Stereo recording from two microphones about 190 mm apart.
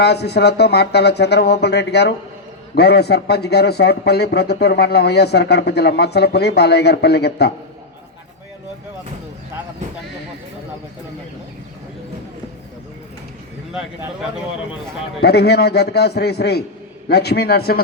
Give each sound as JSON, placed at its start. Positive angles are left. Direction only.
{"t": 0.0, "sound": "speech", "side_deg": 60}
{"t": 15.2, "sound": "speech", "side_deg": 60}